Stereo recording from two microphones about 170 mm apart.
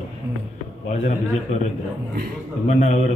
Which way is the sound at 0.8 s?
45° left (ahead or behind).